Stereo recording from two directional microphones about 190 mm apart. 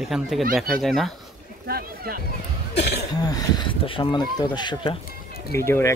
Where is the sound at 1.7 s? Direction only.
55° right (ahead or behind).